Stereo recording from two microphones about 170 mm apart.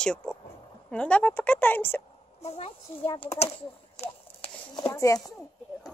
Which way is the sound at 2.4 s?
40° left (ahead or behind).